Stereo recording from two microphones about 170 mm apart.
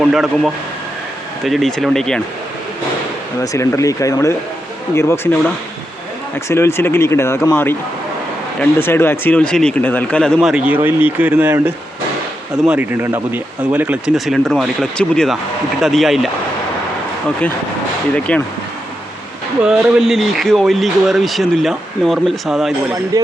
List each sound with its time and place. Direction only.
0.0 s speech: centre (ahead or behind)
3.4 s speech: 20° left (ahead or behind)
6.5 s speech: 15° left (ahead or behind); by 16.3 s centre (ahead or behind)
18.1 s speech: 10° left (ahead or behind)
19.6 s speech: 5° right (ahead or behind)
23.1 s speech: 20° right (ahead or behind)